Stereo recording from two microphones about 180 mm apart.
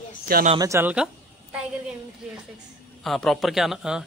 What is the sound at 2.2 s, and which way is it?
Speech, centre (ahead or behind).